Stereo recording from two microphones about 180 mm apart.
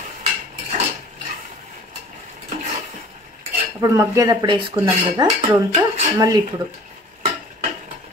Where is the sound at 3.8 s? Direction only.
15° right (ahead or behind).